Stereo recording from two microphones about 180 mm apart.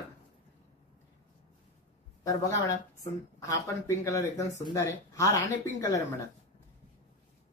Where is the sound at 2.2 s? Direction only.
20° left (ahead or behind).